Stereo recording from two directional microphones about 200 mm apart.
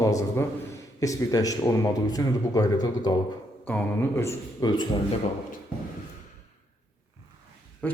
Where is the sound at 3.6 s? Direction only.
10° left (ahead or behind).